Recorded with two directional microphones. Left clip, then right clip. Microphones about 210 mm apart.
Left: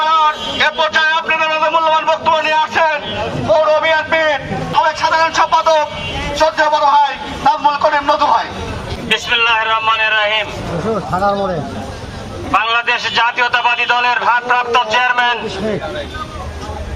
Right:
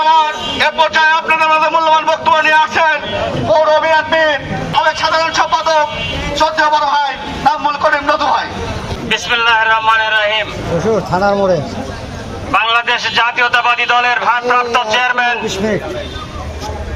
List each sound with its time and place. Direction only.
0.0 s a sound: centre (ahead or behind)
11.2 s speech: 40° right (ahead or behind)
12.5 s a man's voice: centre (ahead or behind)